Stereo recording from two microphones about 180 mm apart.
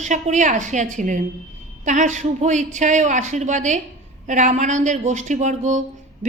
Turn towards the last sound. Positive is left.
turn(degrees=-40)  # may be behind; listen again after turning